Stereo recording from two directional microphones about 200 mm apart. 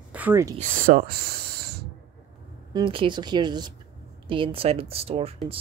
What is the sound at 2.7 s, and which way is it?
Speech, 20° right (ahead or behind).